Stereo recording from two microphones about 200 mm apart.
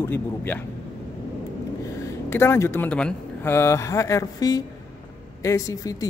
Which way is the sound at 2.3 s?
10° left (ahead or behind).